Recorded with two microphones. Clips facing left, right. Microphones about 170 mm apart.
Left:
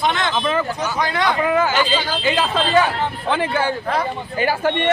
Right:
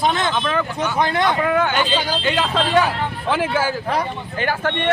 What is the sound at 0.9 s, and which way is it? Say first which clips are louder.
Speech: right 2 dB; 25° right (ahead or behind).